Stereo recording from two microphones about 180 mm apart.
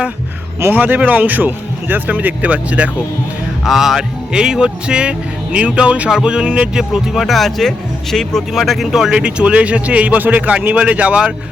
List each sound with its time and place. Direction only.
0.6 s speech: 10° right (ahead or behind)